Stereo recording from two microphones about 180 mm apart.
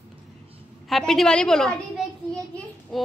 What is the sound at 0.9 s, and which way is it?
A woman's voice, centre (ahead or behind).